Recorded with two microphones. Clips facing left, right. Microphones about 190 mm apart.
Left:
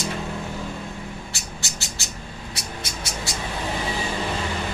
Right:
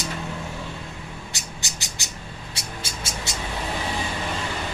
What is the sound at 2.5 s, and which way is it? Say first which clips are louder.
Music: left 1 dB; 25° right (ahead or behind).